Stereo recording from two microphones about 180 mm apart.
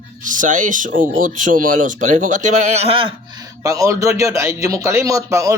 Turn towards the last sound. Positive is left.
turn(degrees=-15)  # may be behind; listen again after turning